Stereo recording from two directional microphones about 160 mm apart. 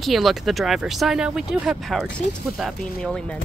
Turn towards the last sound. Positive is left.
turn(degrees=5)  # may be behind; listen again after turning